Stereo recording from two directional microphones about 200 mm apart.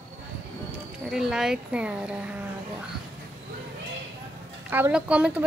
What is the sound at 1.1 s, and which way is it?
A woman's voice, centre (ahead or behind).